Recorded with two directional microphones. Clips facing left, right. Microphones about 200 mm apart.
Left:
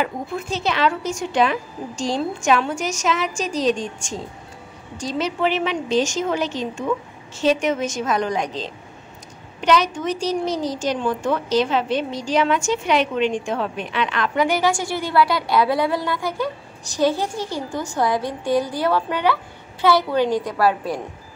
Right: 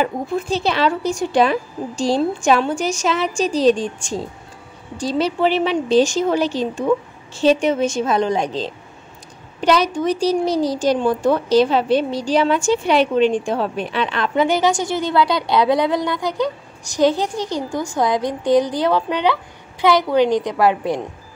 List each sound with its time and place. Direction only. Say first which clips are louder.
0.0 s a woman's voice: right 4 dB; 35° right (ahead or behind)